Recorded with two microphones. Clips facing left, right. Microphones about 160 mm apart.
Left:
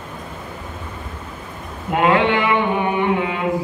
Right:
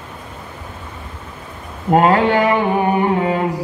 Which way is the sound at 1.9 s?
40° right (ahead or behind).